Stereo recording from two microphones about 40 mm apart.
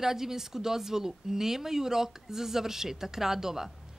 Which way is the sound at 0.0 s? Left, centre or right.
Centre.